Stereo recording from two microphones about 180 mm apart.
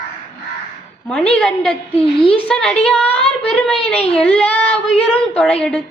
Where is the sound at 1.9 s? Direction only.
30° left (ahead or behind).